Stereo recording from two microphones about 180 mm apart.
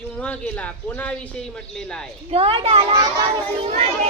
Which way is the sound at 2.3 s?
30° right (ahead or behind).